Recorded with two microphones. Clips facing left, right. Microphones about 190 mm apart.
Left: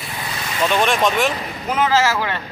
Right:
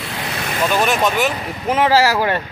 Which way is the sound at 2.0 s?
40° right (ahead or behind).